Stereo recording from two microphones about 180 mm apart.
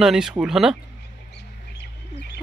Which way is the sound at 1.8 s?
65° left (ahead or behind).